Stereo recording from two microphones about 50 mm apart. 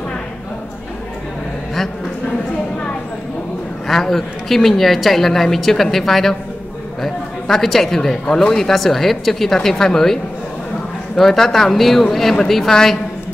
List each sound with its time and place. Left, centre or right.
3.8 s a woman's voice: centre
11.1 s speech: centre